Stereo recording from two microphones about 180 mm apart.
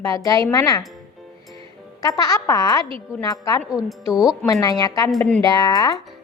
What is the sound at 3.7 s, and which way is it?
Speech, 5° right (ahead or behind).